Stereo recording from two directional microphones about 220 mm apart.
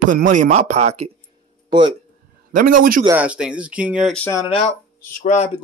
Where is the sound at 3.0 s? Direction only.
10° right (ahead or behind); by 4.5 s 10° left (ahead or behind).